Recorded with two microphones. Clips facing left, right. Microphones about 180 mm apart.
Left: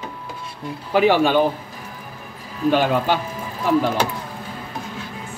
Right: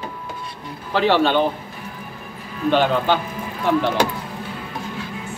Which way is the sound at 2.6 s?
10° left (ahead or behind).